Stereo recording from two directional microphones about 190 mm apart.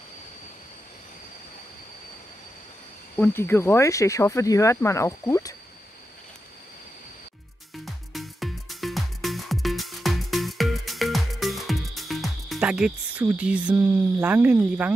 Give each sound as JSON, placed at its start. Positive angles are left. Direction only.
{"t": 3.2, "sound": "speech", "side_deg": 10}
{"t": 7.7, "sound": "music", "side_deg": 0}